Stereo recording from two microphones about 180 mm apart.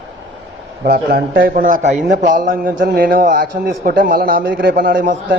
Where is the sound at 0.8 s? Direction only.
60° right (ahead or behind).